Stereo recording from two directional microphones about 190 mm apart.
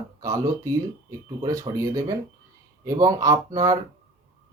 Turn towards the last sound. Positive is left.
turn(degrees=-15)  # may be behind; listen again after turning